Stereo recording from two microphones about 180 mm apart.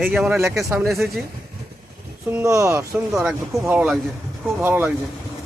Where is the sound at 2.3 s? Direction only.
15° right (ahead or behind).